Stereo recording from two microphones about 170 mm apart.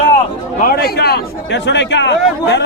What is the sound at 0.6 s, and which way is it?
A man's voice, 65° left (ahead or behind).